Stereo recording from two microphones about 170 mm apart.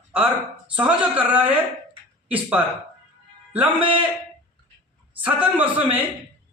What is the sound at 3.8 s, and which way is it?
Speech, 30° right (ahead or behind).